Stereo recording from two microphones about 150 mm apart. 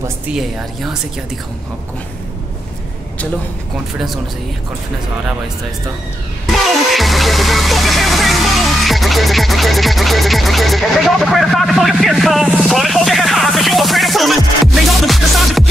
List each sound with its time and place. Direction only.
6.4 s music: centre (ahead or behind)